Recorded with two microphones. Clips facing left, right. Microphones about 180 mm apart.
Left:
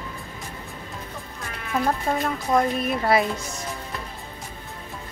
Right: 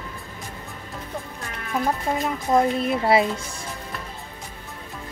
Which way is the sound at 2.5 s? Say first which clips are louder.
Right 2 dB; 25° right (ahead or behind).